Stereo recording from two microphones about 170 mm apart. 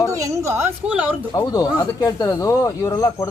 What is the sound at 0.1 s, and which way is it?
A woman's voice, 20° right (ahead or behind).